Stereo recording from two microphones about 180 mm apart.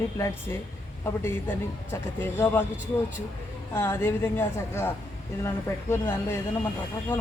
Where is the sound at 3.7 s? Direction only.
15° left (ahead or behind).